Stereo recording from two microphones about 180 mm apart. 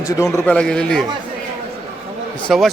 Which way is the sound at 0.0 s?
20° left (ahead or behind).